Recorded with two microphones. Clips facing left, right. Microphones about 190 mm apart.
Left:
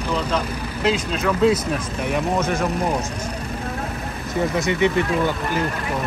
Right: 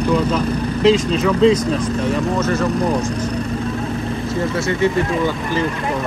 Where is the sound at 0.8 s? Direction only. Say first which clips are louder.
Right 6 dB; centre (ahead or behind).